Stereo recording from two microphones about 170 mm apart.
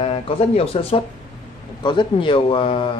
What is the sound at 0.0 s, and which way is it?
Speech, 35° left (ahead or behind).